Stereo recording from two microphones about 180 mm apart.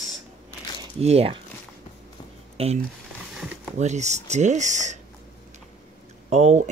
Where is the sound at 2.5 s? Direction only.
35° right (ahead or behind).